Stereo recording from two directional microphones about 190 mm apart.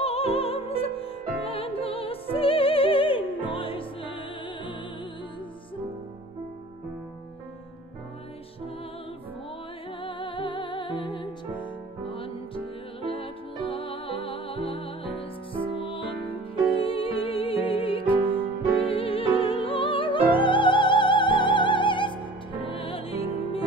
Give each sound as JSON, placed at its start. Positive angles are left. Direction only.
{"t": 0.0, "sound": "music", "side_deg": 30}
{"t": 10.0, "sound": "music", "side_deg": 25}